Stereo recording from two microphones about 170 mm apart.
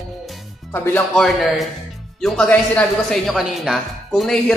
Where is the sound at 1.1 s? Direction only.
Centre (ahead or behind).